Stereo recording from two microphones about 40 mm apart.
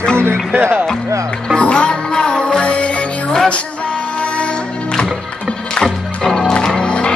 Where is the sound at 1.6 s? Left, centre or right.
Left.